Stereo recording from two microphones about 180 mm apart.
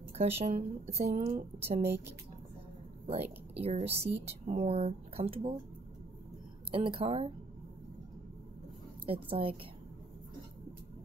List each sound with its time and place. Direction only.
0.2 s a woman's voice: 35° right (ahead or behind)
3.6 s a woman's voice: 35° right (ahead or behind)
6.7 s speech: 30° right (ahead or behind)
9.0 s a woman's voice: 30° right (ahead or behind)